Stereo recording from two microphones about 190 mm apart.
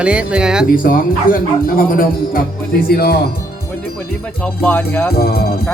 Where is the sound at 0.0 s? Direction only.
5° right (ahead or behind).